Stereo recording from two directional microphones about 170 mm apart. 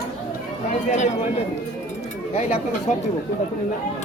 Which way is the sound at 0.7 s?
45° left (ahead or behind).